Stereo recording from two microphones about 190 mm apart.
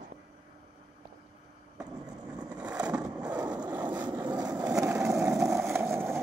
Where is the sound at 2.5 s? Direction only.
5° right (ahead or behind).